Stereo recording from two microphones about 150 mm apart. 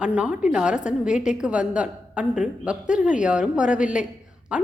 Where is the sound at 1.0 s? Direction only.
55° left (ahead or behind).